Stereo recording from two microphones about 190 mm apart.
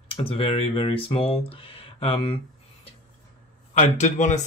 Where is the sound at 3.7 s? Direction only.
40° left (ahead or behind).